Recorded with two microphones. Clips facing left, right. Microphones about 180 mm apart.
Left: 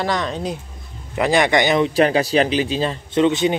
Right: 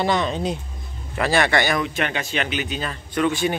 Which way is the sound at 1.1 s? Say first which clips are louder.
Left 3 dB; 15° left (ahead or behind).